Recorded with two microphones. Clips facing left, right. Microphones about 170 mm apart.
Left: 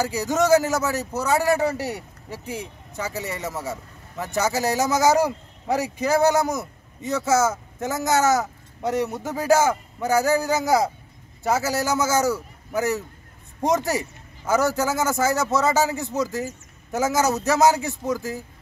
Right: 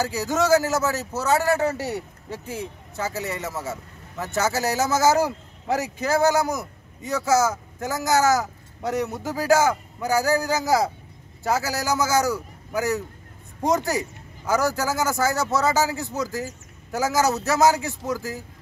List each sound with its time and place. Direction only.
0.0 s a man's voice: 15° left (ahead or behind)
14.5 s speech: 20° left (ahead or behind)